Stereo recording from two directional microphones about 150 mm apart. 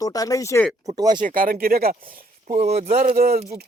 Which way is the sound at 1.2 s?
70° right (ahead or behind).